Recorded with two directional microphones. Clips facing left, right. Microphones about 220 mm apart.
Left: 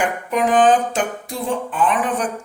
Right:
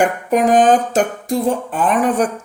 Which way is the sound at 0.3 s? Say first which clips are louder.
Right 2 dB; 45° right (ahead or behind).